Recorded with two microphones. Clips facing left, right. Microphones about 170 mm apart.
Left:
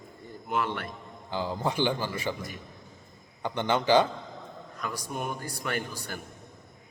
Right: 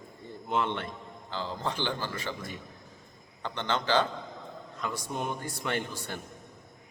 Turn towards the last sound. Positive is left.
turn(degrees=-25)  # may be behind; listen again after turning